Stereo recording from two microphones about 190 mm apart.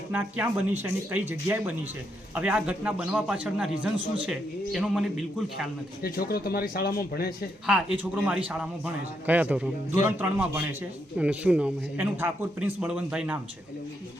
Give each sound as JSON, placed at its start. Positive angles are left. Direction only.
{"t": 0.1, "sound": "a man's voice", "side_deg": -10}
{"t": 6.0, "sound": "speech", "side_deg": 50}
{"t": 7.7, "sound": "a man's voice", "side_deg": -5}